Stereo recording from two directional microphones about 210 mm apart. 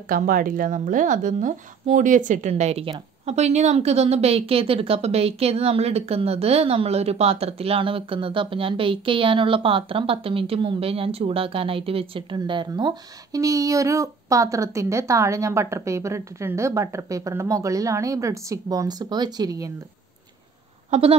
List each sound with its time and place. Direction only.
0.1 s speech: 40° right (ahead or behind); by 19.7 s 15° right (ahead or behind)
20.9 s speech: 25° right (ahead or behind)